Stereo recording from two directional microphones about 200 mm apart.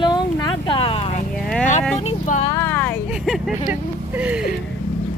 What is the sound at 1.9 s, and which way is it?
Speech, 30° left (ahead or behind).